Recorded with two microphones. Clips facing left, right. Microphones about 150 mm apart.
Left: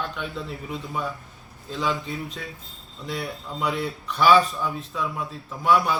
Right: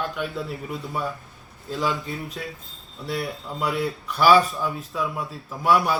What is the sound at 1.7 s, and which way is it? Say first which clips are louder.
Speech: right 1 dB; 5° right (ahead or behind).